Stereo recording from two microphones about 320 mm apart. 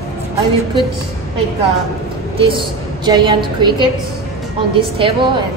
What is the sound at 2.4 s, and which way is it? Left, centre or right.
A woman's voice, centre.